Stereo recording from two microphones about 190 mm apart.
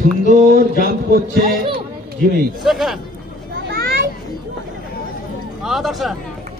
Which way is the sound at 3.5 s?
50° right (ahead or behind).